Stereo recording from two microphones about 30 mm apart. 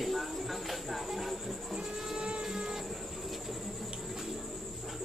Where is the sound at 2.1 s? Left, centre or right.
Right.